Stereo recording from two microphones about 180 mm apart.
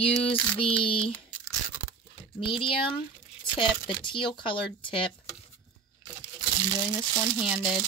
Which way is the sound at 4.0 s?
25° left (ahead or behind).